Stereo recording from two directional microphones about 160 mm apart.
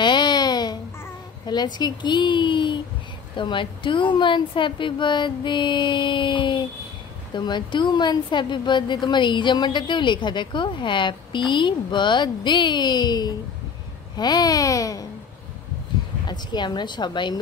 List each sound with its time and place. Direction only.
0.0 s a sound: 25° left (ahead or behind)
1.4 s a woman's voice: 25° left (ahead or behind)
16.3 s a woman's voice: 25° left (ahead or behind)